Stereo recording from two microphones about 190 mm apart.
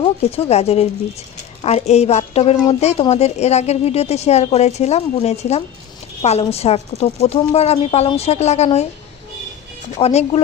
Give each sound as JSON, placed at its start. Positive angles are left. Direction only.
{"t": 0.0, "sound": "a woman's voice", "side_deg": 30}
{"t": 10.0, "sound": "a woman's voice", "side_deg": 35}